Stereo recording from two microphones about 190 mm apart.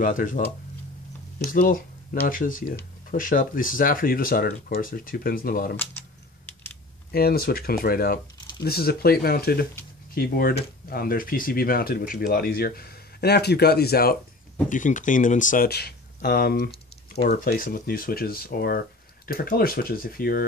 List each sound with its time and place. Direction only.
0.0 s speech: 45° left (ahead or behind)
1.4 s speech: 50° left (ahead or behind)
5.8 s typing: 10° left (ahead or behind)
7.1 s speech: 55° left (ahead or behind)
14.7 s speech: 45° left (ahead or behind)